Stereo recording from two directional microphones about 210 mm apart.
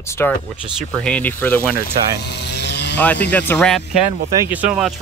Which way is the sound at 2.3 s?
55° left (ahead or behind).